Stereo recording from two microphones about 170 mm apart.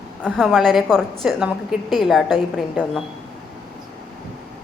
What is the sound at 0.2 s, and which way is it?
A woman's voice, 5° left (ahead or behind).